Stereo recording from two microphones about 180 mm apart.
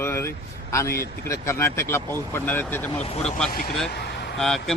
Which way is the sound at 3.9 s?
65° left (ahead or behind).